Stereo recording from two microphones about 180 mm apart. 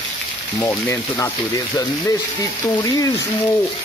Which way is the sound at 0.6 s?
20° left (ahead or behind).